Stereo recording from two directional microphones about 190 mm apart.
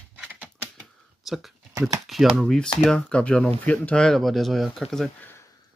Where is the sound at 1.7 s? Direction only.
15° right (ahead or behind).